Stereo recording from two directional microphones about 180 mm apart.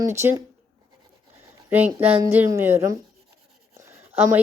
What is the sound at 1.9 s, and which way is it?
Speech, 10° right (ahead or behind).